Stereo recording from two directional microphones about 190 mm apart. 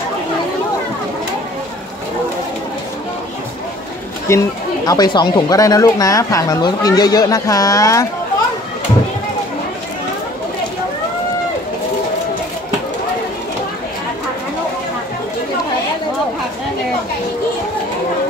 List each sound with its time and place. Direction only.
4.3 s speech: 15° left (ahead or behind)